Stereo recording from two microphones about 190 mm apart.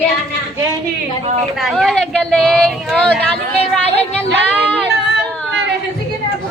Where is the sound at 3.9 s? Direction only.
65° right (ahead or behind).